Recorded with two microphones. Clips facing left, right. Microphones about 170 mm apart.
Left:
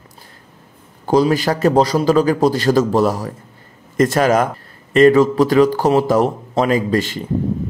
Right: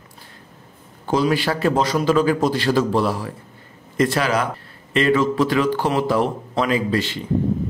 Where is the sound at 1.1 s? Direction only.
40° left (ahead or behind).